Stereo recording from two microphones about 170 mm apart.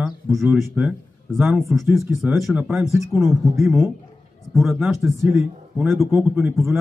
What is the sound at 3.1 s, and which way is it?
Speech, 15° right (ahead or behind).